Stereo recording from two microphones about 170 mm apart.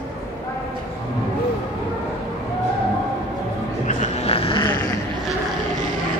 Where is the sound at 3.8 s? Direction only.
40° left (ahead or behind).